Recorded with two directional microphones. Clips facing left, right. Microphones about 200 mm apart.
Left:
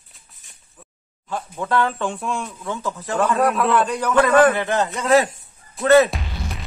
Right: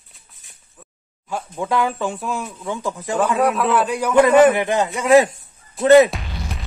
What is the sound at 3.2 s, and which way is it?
A man's voice, centre (ahead or behind).